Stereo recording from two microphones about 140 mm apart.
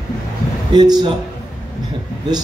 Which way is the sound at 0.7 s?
30° right (ahead or behind).